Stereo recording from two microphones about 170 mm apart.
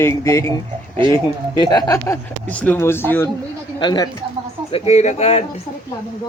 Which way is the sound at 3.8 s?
25° left (ahead or behind).